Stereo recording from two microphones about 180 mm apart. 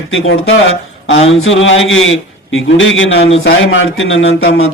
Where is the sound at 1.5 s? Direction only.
90° left.